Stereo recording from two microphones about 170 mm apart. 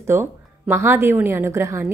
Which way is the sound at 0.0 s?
15° right (ahead or behind).